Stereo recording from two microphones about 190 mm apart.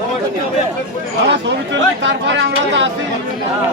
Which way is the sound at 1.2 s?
70° right (ahead or behind).